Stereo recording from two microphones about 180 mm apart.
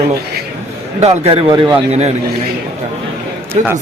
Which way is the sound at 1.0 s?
35° right (ahead or behind).